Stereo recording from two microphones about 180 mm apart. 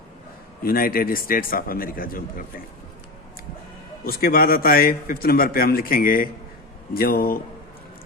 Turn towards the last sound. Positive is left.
turn(degrees=55)  # may be behind; listen again after turning